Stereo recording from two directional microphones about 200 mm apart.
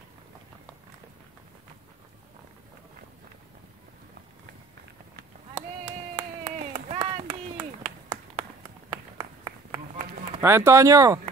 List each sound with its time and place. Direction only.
5.5 s clapping: 30° right (ahead or behind)
8.9 s clapping: 30° right (ahead or behind)
10.4 s speech: 15° right (ahead or behind)